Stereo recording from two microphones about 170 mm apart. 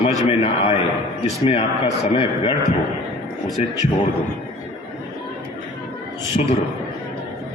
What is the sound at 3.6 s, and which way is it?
Speech, 40° left (ahead or behind).